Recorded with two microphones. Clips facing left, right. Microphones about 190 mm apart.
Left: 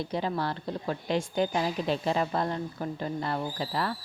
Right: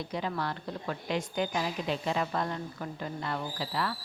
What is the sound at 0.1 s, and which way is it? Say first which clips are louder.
A woman's voice: left 3 dB; 30° left (ahead or behind).